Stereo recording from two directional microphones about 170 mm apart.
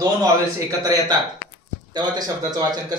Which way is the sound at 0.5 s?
25° right (ahead or behind).